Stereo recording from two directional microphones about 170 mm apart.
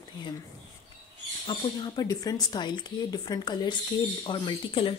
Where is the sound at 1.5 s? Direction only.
20° left (ahead or behind).